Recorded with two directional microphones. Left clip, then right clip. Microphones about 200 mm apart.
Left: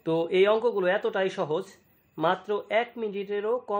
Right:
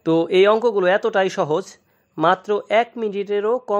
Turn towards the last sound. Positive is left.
turn(degrees=-45)  # may be behind; listen again after turning